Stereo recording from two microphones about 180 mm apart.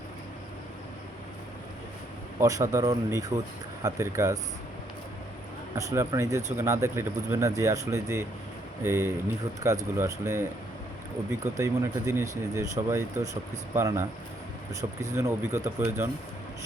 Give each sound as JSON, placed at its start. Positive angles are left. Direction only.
{"t": 2.4, "sound": "speech", "side_deg": -20}
{"t": 5.7, "sound": "speech", "side_deg": -15}
{"t": 11.5, "sound": "speech", "side_deg": -15}